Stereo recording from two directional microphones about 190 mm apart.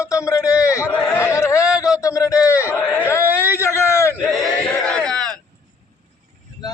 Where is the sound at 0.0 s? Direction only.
15° left (ahead or behind).